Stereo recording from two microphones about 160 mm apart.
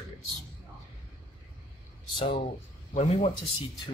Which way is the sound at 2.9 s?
40° left (ahead or behind).